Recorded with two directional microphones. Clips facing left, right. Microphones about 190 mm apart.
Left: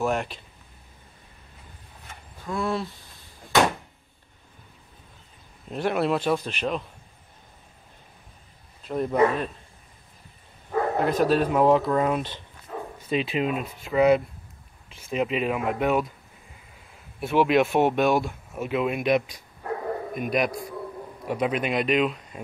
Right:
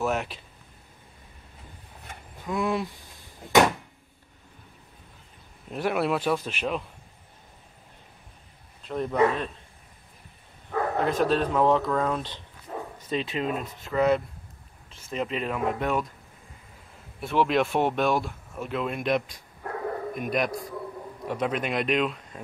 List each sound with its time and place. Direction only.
0.0 s speech: 5° right (ahead or behind)
2.4 s speech: 15° right (ahead or behind)
5.7 s speech: 5° right (ahead or behind)
8.8 s speech: 5° left (ahead or behind)
10.7 s speech: 5° left (ahead or behind)
17.2 s speech: 5° left (ahead or behind)